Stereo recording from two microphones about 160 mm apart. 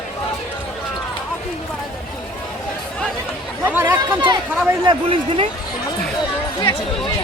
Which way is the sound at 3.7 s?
10° right (ahead or behind).